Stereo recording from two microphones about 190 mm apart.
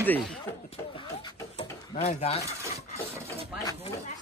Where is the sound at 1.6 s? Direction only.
35° left (ahead or behind).